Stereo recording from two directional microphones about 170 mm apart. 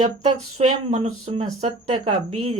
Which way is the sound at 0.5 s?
40° right (ahead or behind).